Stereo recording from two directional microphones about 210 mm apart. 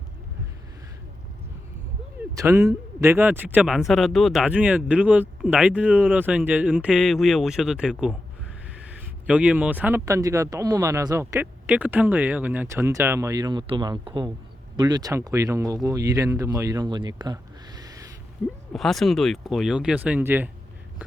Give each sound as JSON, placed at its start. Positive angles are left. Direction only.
{"t": 2.3, "sound": "speech", "side_deg": -15}
{"t": 9.2, "sound": "speech", "side_deg": -5}
{"t": 18.7, "sound": "speech", "side_deg": 0}